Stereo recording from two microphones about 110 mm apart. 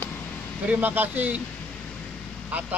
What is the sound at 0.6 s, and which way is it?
Speech, 15° right (ahead or behind).